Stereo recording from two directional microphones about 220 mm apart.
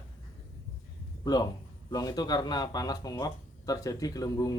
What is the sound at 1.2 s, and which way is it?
Speech, 15° left (ahead or behind).